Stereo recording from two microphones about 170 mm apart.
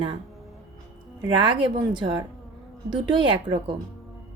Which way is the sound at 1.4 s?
25° right (ahead or behind).